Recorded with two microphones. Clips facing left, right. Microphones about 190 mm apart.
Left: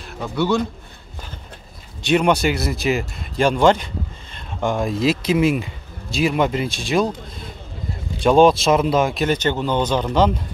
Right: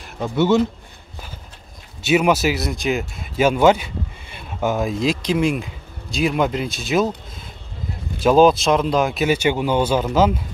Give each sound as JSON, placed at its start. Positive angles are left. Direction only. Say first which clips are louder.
{"t": 0.2, "sound": "speech", "louder": "right 3 dB", "side_deg": -20}
{"t": 2.0, "sound": "speech", "louder": "even", "side_deg": -5}
{"t": 8.2, "sound": "speech", "louder": "even", "side_deg": 0}